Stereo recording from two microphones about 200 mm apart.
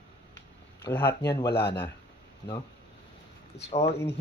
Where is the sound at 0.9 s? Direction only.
10° left (ahead or behind).